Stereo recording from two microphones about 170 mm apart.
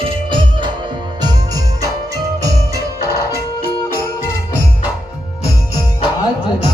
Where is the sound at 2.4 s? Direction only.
20° right (ahead or behind).